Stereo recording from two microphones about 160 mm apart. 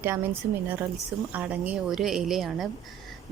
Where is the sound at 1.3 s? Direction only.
10° right (ahead or behind).